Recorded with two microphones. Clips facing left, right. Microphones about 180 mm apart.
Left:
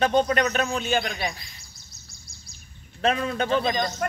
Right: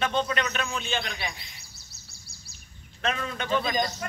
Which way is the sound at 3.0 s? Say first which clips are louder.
Left 7 dB; 35° left (ahead or behind).